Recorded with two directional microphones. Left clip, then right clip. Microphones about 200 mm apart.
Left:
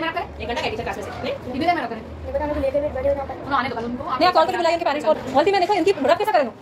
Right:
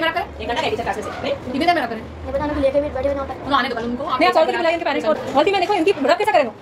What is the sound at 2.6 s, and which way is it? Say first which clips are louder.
Speech: right 5 dB; 30° right (ahead or behind).